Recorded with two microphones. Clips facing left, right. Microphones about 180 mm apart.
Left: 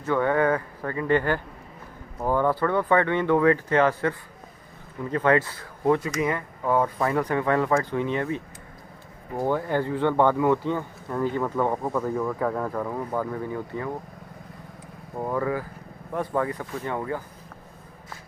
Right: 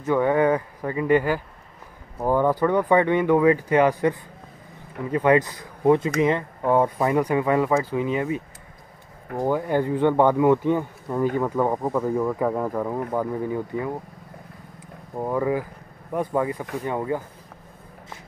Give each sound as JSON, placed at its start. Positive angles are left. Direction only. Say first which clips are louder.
{"t": 0.0, "sound": "speech", "louder": "right 3 dB", "side_deg": -15}
{"t": 9.4, "sound": "speech", "louder": "right 2 dB", "side_deg": -15}
{"t": 15.1, "sound": "speech", "louder": "right 3 dB", "side_deg": -15}